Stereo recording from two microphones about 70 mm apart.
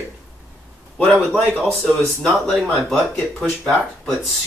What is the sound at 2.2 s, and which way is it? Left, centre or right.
Speech, centre.